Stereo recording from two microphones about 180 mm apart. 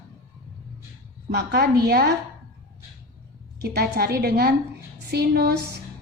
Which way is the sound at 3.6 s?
60° right (ahead or behind).